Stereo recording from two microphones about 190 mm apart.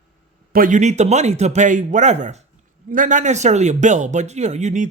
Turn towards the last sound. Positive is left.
turn(degrees=-35)  # may be behind; listen again after turning